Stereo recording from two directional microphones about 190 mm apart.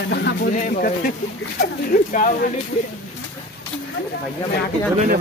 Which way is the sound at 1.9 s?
45° left (ahead or behind).